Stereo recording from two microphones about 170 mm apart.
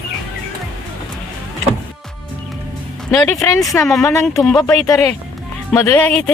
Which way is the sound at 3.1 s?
15° left (ahead or behind).